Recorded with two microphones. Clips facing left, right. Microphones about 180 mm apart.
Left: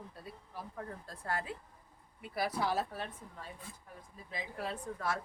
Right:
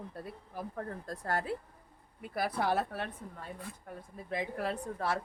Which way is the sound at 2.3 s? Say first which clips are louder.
Right 2 dB; 55° right (ahead or behind).